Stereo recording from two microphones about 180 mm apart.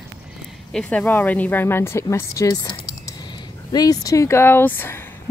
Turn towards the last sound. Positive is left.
turn(degrees=10)  # may be behind; listen again after turning